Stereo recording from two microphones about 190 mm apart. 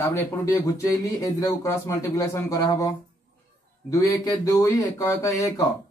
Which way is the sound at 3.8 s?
15° left (ahead or behind).